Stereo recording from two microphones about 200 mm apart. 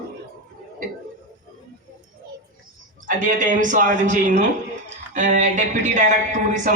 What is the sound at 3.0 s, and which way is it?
Speech, 40° right (ahead or behind).